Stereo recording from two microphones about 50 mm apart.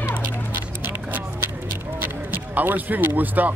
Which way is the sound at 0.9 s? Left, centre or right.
Right.